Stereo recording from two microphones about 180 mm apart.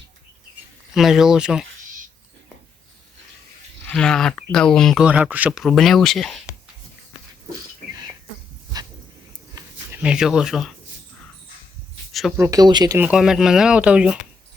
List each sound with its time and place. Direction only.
0.9 s speech: centre (ahead or behind)
3.8 s speech: 5° left (ahead or behind)
9.6 s a sound: 20° right (ahead or behind)
10.0 s speech: 5° right (ahead or behind)
12.4 s speech: 20° right (ahead or behind)
13.0 s speech: 5° right (ahead or behind)